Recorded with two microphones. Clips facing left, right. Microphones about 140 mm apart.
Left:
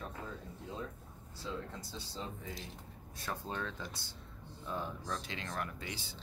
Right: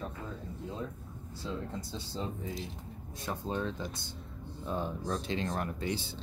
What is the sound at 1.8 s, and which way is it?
Speech, 30° right (ahead or behind).